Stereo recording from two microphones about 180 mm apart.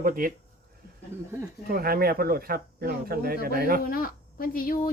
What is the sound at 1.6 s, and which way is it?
Speech, 55° right (ahead or behind).